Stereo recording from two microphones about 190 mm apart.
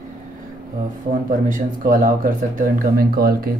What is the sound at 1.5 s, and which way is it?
Speech, 45° right (ahead or behind).